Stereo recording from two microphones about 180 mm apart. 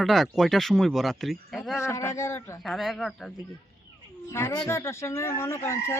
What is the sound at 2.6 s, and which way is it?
Speech, centre (ahead or behind).